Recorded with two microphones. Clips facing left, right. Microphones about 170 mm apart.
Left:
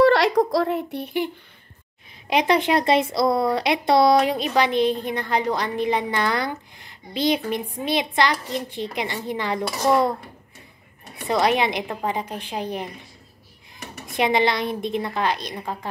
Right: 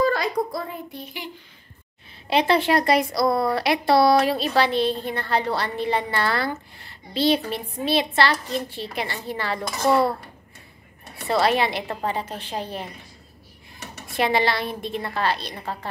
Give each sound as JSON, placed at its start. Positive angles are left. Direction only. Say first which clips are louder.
{"t": 0.0, "sound": "speech", "louder": "left 6 dB", "side_deg": 80}
{"t": 2.2, "sound": "speech", "louder": "even", "side_deg": 15}
{"t": 11.1, "sound": "speech", "louder": "even", "side_deg": 15}
{"t": 14.0, "sound": "speech", "louder": "left 1 dB", "side_deg": 20}